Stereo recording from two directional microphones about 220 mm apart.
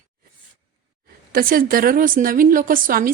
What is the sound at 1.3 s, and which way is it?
A woman's voice, 40° right (ahead or behind).